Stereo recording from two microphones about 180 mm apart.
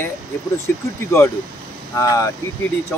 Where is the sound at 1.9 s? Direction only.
15° left (ahead or behind).